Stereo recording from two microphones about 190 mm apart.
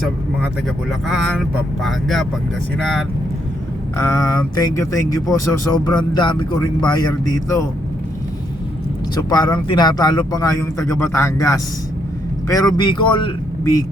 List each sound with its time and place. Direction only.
0.9 s speech: centre (ahead or behind)
3.9 s speech: 15° left (ahead or behind)
9.3 s speech: 20° left (ahead or behind)